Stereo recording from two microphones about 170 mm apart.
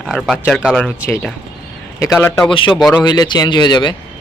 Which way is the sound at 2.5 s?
30° left (ahead or behind).